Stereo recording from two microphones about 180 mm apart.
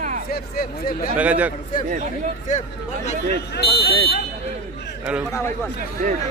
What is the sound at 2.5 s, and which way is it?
Speech, 45° left (ahead or behind).